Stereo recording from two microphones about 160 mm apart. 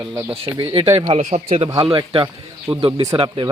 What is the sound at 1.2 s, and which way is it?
Speech, 55° right (ahead or behind).